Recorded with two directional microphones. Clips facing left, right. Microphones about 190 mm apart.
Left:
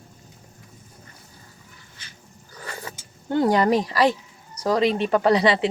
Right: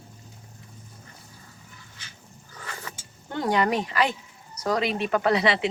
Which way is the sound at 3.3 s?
35° left (ahead or behind).